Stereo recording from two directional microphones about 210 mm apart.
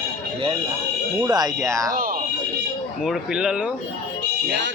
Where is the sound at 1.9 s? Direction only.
45° right (ahead or behind).